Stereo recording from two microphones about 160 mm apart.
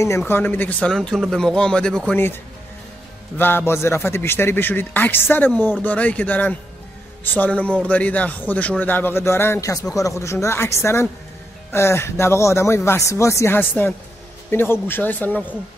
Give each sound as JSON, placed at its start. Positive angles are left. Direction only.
{"t": 0.0, "sound": "speech", "side_deg": 15}
{"t": 3.3, "sound": "speech", "side_deg": 15}